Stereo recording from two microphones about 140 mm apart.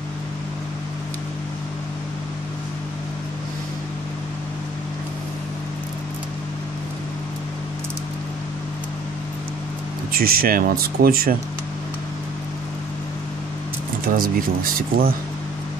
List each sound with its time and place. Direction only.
10.1 s speech: 90° right
14.0 s speech: 90° right